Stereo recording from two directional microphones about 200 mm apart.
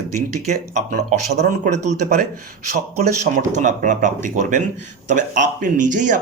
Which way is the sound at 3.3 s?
40° right (ahead or behind).